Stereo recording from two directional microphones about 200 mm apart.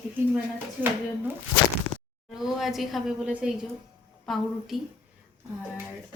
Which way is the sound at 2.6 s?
Centre (ahead or behind).